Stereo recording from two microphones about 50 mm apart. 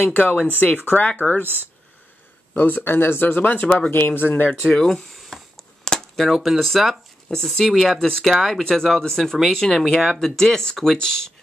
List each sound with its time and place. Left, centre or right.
0.0 s speech: left
1.4 s speech: right
2.5 s speech: left
3.9 s speech: left
4.8 s speech: centre